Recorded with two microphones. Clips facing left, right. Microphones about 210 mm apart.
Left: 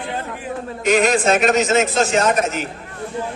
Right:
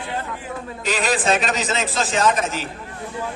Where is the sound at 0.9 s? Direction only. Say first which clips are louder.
Left 4 dB; 45° left (ahead or behind).